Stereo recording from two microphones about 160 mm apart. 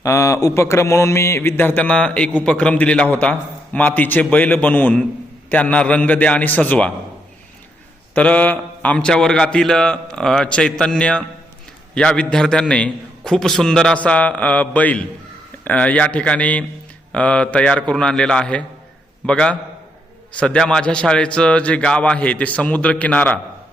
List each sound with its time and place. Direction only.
0.0 s a man's voice: 20° left (ahead or behind)
8.1 s a man's voice: 10° left (ahead or behind)